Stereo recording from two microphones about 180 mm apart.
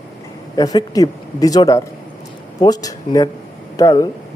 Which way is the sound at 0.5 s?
20° left (ahead or behind).